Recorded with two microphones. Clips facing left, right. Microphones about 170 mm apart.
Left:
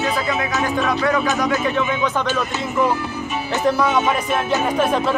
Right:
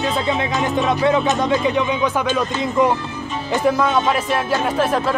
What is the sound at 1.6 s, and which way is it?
Speech, 15° right (ahead or behind).